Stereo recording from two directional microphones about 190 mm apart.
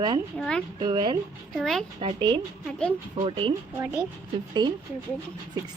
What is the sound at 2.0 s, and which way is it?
Speech, 25° right (ahead or behind).